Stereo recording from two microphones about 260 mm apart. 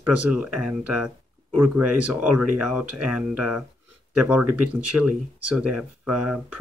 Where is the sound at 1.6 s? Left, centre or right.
Right.